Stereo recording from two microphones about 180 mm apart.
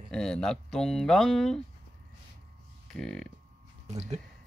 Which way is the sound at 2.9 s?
Centre (ahead or behind).